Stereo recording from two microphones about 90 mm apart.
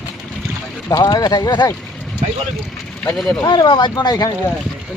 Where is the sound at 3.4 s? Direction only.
55° left (ahead or behind).